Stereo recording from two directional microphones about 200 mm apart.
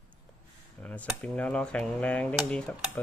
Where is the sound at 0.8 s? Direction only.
10° left (ahead or behind).